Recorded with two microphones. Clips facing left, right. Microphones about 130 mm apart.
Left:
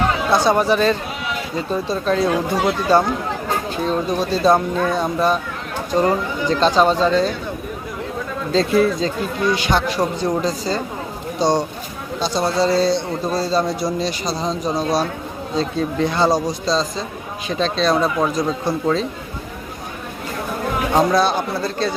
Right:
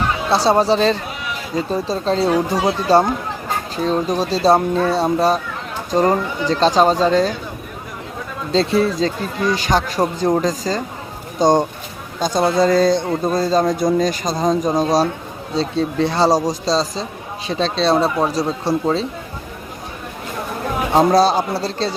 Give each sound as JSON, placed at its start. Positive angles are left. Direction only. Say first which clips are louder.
{"t": 0.3, "sound": "speech", "louder": "right 2 dB", "side_deg": -30}
{"t": 8.5, "sound": "a man's voice", "louder": "even", "side_deg": -35}
{"t": 20.9, "sound": "speech", "louder": "right 3 dB", "side_deg": -35}